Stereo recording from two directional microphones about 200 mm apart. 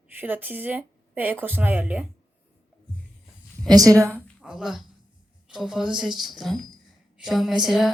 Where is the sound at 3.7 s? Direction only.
15° right (ahead or behind).